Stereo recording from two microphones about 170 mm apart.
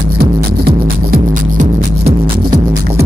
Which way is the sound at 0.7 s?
60° right (ahead or behind).